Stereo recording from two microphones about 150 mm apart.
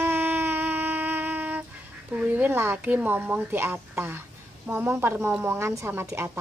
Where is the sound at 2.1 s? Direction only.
10° right (ahead or behind).